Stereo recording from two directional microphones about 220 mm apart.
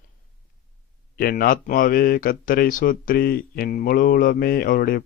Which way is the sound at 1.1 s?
40° left (ahead or behind).